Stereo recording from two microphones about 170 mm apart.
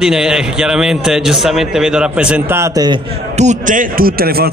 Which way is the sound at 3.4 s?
45° right (ahead or behind).